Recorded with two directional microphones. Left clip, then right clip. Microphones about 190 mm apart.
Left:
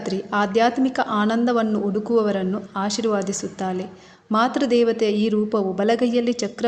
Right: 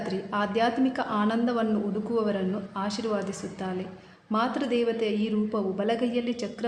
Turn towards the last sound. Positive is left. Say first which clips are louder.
# left 8 dB
turn(degrees=30)  # may be behind; listen again after turning